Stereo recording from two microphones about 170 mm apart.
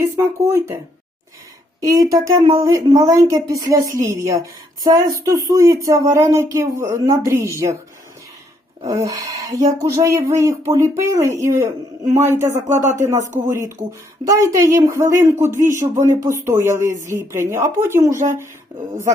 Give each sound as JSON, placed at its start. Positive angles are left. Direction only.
{"t": 0.0, "sound": "speech", "side_deg": -20}
{"t": 1.8, "sound": "a woman's voice", "side_deg": -20}
{"t": 8.9, "sound": "a woman's voice", "side_deg": -20}